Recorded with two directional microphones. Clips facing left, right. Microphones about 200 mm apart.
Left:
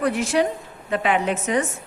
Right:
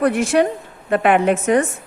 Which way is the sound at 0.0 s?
55° right (ahead or behind).